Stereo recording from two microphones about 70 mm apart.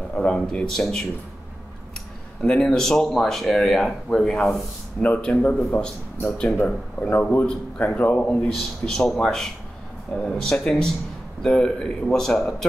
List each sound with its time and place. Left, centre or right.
0.1 s a man's voice: centre
2.4 s speech: centre
5.0 s a man's voice: left